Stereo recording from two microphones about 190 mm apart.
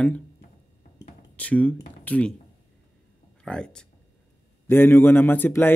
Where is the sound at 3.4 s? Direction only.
5° left (ahead or behind).